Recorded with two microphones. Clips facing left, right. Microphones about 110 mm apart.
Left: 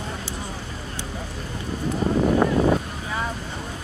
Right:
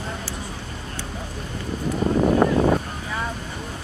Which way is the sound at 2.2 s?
20° right (ahead or behind).